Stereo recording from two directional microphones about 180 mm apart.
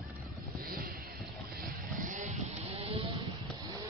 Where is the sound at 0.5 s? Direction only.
55° right (ahead or behind).